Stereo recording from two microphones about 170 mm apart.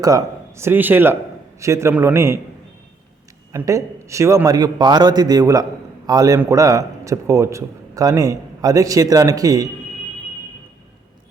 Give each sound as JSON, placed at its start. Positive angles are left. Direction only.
{"t": 0.0, "sound": "speech", "side_deg": -20}
{"t": 3.6, "sound": "a man's voice", "side_deg": -15}